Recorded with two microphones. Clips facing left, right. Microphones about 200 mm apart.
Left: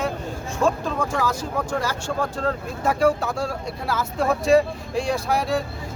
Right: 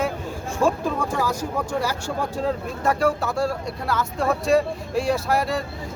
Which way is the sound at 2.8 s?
Centre (ahead or behind).